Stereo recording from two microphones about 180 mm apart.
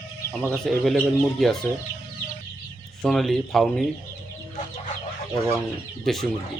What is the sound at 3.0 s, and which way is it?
Speech, centre (ahead or behind).